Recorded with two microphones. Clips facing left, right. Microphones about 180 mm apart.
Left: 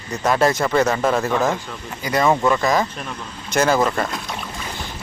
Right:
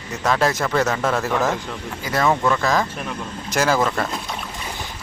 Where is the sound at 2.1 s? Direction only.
10° left (ahead or behind).